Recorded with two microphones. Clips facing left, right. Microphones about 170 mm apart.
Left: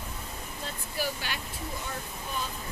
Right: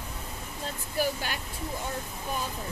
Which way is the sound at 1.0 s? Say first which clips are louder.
Right 4 dB; 45° right (ahead or behind).